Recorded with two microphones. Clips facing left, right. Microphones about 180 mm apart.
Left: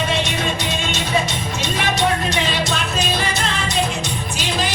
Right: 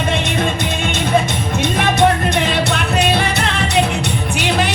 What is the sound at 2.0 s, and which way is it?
Music, 60° right (ahead or behind).